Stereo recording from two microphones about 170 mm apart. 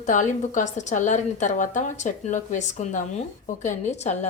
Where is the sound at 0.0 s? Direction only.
50° left (ahead or behind).